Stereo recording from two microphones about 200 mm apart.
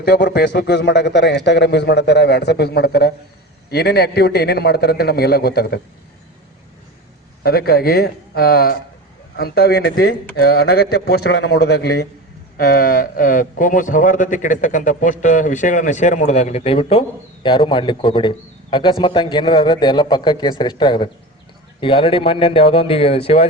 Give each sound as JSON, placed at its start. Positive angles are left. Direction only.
{"t": 0.0, "sound": "a man's voice", "side_deg": 55}
{"t": 7.4, "sound": "a man's voice", "side_deg": 50}